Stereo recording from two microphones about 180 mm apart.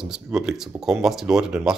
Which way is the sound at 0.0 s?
Centre (ahead or behind).